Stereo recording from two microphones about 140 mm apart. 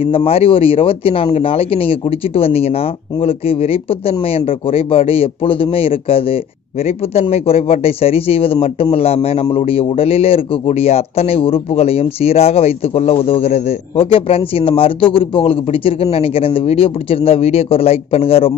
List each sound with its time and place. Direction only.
0.1 s a man's voice: 45° left (ahead or behind)